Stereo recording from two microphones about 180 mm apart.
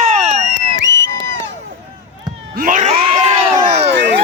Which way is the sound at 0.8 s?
90° right.